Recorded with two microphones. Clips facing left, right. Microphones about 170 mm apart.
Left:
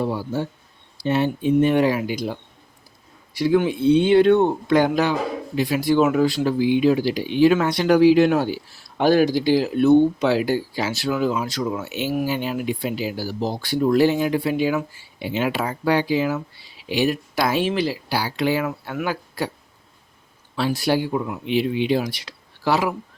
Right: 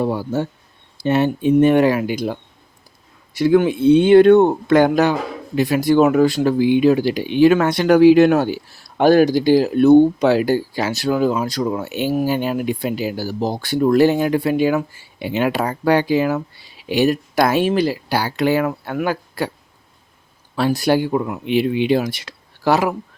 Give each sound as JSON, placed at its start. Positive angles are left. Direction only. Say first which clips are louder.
{"t": 0.0, "sound": "speech", "louder": "right 4 dB", "side_deg": -55}
{"t": 3.3, "sound": "speech", "louder": "right 4 dB", "side_deg": -50}
{"t": 15.5, "sound": "speech", "louder": "right 4 dB", "side_deg": -45}
{"t": 20.6, "sound": "speech", "louder": "right 4 dB", "side_deg": -50}